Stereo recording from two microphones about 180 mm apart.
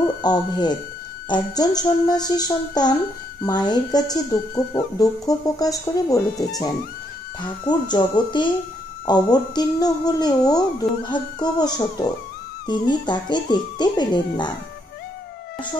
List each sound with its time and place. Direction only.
0.2 s speech: 25° left (ahead or behind)